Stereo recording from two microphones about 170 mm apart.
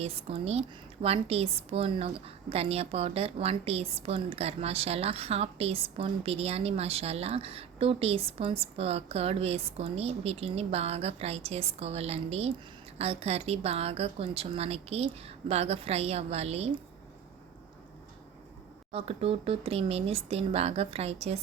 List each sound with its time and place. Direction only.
0.0 s a woman's voice: 35° right (ahead or behind)
18.9 s a woman's voice: 35° right (ahead or behind)